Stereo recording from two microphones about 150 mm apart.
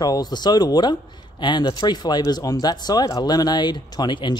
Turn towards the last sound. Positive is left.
turn(degrees=30)  # may be behind; listen again after turning